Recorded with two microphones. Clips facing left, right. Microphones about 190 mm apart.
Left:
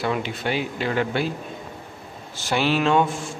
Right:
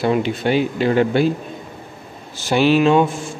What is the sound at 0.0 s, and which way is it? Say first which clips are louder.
Speech: right 7 dB; 30° right (ahead or behind).